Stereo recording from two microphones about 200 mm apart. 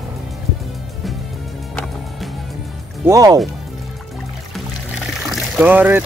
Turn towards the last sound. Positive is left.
turn(degrees=-10)  # may be behind; listen again after turning